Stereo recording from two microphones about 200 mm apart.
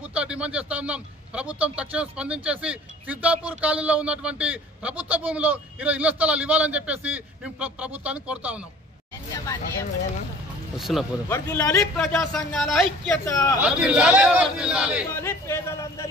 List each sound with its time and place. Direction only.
0.1 s a man's voice: 5° right (ahead or behind)
9.3 s speech: 15° left (ahead or behind)
10.8 s a man's voice: centre (ahead or behind)
11.2 s speech: 10° left (ahead or behind)
12.2 s a man's voice: centre (ahead or behind)
13.2 s speech: 15° left (ahead or behind)
13.6 s a man's voice: 5° right (ahead or behind)
15.2 s a man's voice: 15° left (ahead or behind)